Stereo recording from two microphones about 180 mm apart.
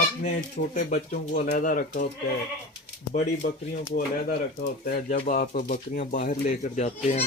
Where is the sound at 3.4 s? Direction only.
55° left (ahead or behind).